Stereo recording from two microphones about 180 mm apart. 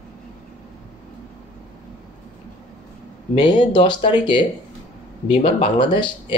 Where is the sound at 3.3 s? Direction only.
25° left (ahead or behind).